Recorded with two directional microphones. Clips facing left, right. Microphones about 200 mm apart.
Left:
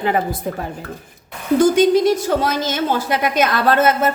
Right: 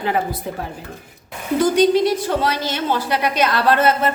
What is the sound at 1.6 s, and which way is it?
A woman's voice, 45° left (ahead or behind).